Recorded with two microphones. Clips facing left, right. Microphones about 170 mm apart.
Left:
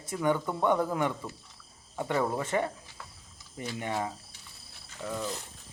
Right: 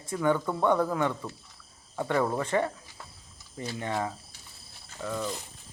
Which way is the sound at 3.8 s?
20° left (ahead or behind).